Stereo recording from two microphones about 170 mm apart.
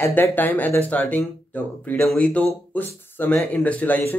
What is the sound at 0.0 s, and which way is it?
Speech, 10° left (ahead or behind).